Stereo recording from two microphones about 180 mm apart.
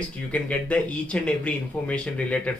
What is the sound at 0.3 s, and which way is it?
Speech, 5° left (ahead or behind).